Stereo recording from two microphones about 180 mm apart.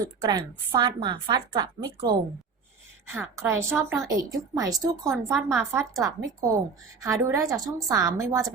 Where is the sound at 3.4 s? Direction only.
15° right (ahead or behind).